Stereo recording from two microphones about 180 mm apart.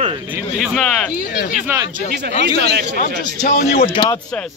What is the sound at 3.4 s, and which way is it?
Speech, 45° left (ahead or behind).